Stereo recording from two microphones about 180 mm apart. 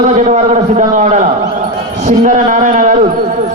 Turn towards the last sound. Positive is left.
turn(degrees=-45)  # may be behind; listen again after turning